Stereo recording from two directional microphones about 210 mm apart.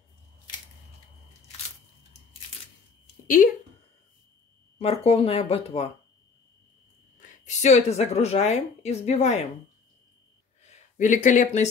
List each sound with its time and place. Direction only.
4.7 s speech: 25° left (ahead or behind)
7.2 s a woman's voice: 35° left (ahead or behind)
11.0 s speech: 35° left (ahead or behind)